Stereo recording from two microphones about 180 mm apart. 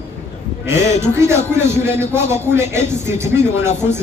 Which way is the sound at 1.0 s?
15° right (ahead or behind).